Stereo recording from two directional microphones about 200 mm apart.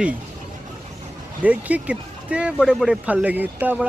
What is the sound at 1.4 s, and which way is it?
Speech, 5° right (ahead or behind).